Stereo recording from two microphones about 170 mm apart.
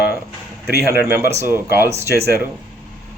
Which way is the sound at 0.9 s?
10° right (ahead or behind).